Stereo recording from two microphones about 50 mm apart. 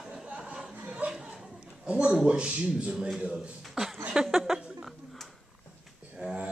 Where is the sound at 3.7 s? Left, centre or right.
Centre.